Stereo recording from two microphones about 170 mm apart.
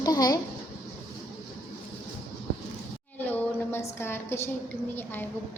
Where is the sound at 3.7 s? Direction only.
15° left (ahead or behind).